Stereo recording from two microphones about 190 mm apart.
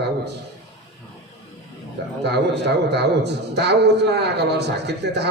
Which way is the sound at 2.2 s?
60° right (ahead or behind).